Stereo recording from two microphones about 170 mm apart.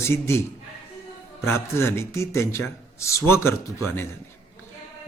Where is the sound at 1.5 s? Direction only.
15° left (ahead or behind).